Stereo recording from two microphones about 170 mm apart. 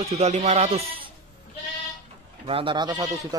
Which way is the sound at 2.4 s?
30° right (ahead or behind).